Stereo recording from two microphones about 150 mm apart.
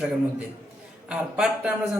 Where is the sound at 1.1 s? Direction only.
5° right (ahead or behind).